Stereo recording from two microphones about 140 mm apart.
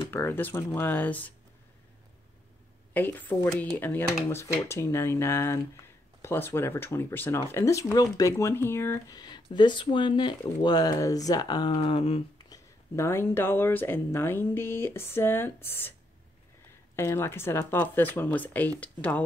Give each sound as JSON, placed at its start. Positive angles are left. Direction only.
{"t": 0.1, "sound": "speech", "side_deg": 15}
{"t": 2.9, "sound": "speech", "side_deg": 15}
{"t": 12.4, "sound": "speech", "side_deg": 20}
{"t": 16.9, "sound": "speech", "side_deg": 20}